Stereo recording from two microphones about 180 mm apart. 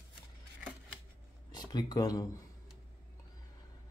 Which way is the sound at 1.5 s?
25° left (ahead or behind).